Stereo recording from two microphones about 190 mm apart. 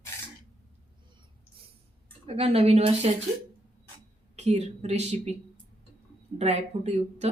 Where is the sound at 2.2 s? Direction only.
30° right (ahead or behind).